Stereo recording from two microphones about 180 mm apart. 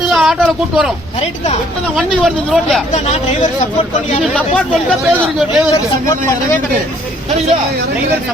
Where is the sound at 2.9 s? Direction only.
40° left (ahead or behind).